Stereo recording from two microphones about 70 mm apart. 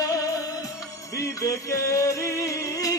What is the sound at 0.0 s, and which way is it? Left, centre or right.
Music, left.